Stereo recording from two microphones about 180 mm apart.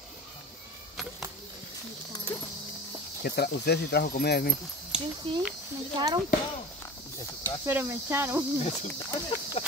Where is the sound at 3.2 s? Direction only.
65° left (ahead or behind).